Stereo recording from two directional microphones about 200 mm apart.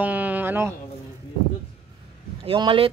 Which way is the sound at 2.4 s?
25° right (ahead or behind).